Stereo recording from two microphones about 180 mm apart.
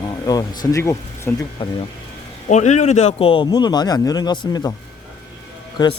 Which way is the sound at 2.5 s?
40° left (ahead or behind).